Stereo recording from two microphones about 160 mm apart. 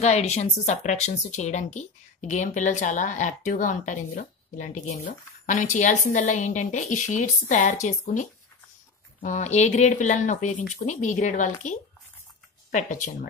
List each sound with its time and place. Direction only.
0.0 s speech: 45° left (ahead or behind)